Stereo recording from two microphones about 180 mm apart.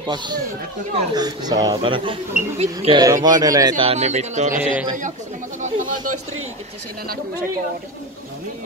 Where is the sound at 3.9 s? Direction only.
40° right (ahead or behind).